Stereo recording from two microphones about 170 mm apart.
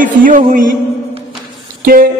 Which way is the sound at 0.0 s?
50° right (ahead or behind).